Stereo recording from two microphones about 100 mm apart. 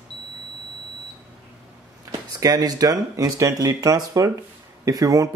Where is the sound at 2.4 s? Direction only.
40° right (ahead or behind).